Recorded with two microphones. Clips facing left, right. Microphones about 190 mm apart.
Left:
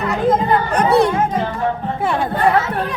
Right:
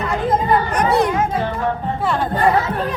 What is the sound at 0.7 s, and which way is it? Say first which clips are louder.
Children playing: left 2 dB; 30° left (ahead or behind).